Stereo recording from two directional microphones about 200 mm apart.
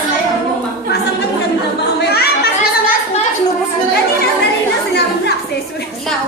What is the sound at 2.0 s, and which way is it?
Children playing, 50° left (ahead or behind).